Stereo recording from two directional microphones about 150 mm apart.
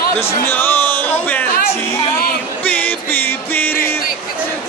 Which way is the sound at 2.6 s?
10° left (ahead or behind).